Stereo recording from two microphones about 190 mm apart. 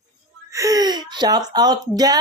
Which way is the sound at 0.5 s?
20° right (ahead or behind).